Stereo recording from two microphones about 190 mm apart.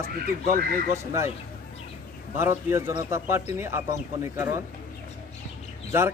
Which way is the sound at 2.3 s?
10° right (ahead or behind).